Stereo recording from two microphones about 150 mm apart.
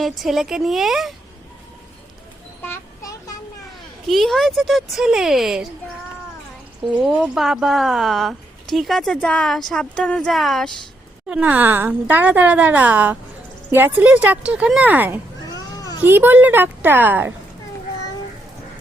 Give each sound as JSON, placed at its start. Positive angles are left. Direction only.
{"t": 0.0, "sound": "a woman's voice", "side_deg": 0}
{"t": 2.6, "sound": "a sound", "side_deg": 20}
{"t": 4.0, "sound": "a woman's voice", "side_deg": 0}
{"t": 7.1, "sound": "a woman's voice", "side_deg": 0}
{"t": 11.3, "sound": "speech", "side_deg": -10}
{"t": 15.4, "sound": "children playing", "side_deg": 25}
{"t": 16.0, "sound": "speech", "side_deg": -15}